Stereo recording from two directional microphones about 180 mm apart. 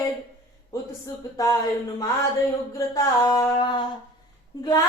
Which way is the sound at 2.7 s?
20° left (ahead or behind).